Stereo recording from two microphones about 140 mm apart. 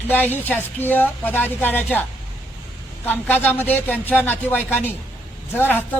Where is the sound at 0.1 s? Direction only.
15° left (ahead or behind).